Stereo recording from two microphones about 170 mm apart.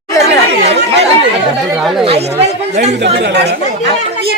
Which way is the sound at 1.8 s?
Centre (ahead or behind).